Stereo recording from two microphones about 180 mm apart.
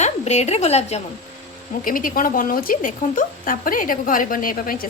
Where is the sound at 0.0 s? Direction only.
40° left (ahead or behind).